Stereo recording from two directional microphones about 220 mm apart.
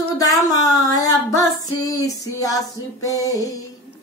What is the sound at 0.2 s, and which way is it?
Female singing, 15° left (ahead or behind).